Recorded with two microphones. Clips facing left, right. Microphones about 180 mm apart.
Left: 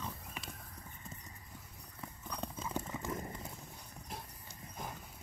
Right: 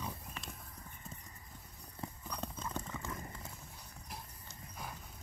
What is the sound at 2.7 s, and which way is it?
Clip-clop, 15° left (ahead or behind).